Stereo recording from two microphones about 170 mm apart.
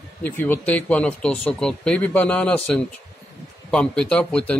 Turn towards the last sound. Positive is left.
turn(degrees=5)  # may be behind; listen again after turning